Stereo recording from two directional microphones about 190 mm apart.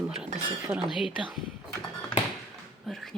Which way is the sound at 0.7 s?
Centre (ahead or behind).